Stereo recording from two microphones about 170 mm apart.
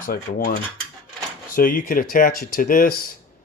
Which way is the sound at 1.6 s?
55° left (ahead or behind).